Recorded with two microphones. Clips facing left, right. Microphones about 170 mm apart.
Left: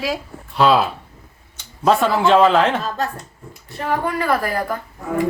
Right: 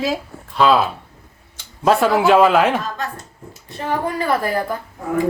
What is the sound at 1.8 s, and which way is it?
Speech, 5° right (ahead or behind).